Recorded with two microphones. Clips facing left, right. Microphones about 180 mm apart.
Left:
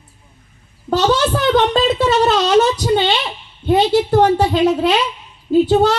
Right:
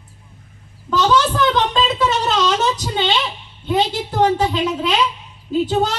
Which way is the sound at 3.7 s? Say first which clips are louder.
Left 7 dB; 60° left (ahead or behind).